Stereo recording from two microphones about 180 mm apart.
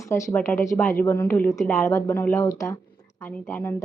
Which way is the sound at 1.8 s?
15° left (ahead or behind).